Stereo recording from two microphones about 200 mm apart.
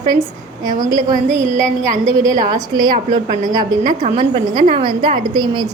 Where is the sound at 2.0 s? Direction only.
15° right (ahead or behind).